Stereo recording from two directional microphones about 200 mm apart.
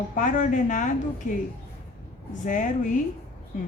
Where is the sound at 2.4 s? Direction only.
40° left (ahead or behind).